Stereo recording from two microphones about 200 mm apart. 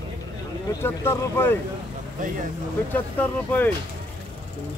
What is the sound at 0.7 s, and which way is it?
Speech, 10° left (ahead or behind).